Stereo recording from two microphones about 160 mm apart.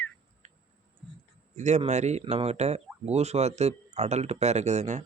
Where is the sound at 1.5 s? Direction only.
50° right (ahead or behind).